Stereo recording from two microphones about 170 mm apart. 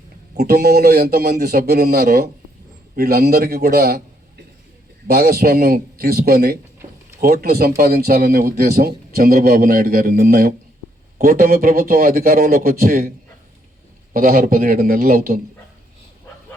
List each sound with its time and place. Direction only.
0.3 s a man's voice: 65° right (ahead or behind)
5.0 s a man's voice: 65° right (ahead or behind)